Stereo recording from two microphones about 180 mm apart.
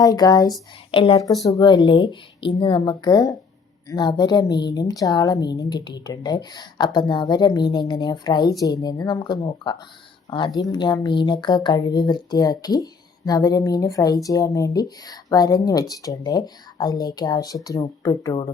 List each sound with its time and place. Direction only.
0.0 s speech: 20° left (ahead or behind)
0.9 s a woman's voice: 30° left (ahead or behind)
1.5 s speech: 20° left (ahead or behind)